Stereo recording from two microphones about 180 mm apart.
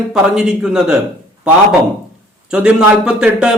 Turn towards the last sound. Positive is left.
turn(degrees=-5)  # may be behind; listen again after turning